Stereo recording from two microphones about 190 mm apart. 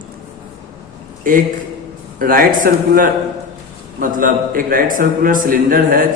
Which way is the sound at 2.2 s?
50° right (ahead or behind).